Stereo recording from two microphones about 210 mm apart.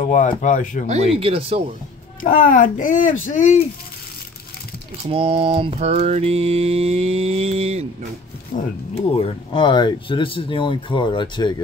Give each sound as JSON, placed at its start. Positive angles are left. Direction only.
{"t": 0.0, "sound": "speech", "side_deg": 35}
{"t": 0.8, "sound": "mantra", "side_deg": -30}
{"t": 2.2, "sound": "speech", "side_deg": 40}
{"t": 5.0, "sound": "mantra", "side_deg": -30}
{"t": 8.5, "sound": "speech", "side_deg": 40}
{"t": 9.2, "sound": "speech", "side_deg": 25}